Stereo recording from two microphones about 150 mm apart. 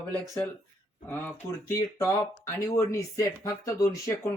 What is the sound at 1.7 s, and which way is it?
Speech, 20° left (ahead or behind).